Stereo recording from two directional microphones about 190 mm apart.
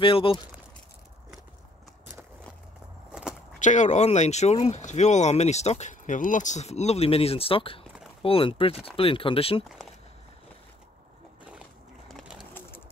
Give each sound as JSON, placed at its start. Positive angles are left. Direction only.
{"t": 0.0, "sound": "speech", "side_deg": 25}
{"t": 3.1, "sound": "walk", "side_deg": -5}
{"t": 3.5, "sound": "speech", "side_deg": 40}
{"t": 12.1, "sound": "bird", "side_deg": 0}